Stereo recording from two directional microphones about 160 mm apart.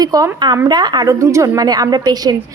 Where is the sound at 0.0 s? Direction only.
20° right (ahead or behind).